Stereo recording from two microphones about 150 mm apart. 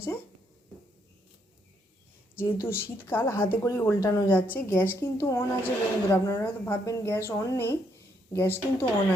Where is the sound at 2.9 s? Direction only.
15° left (ahead or behind).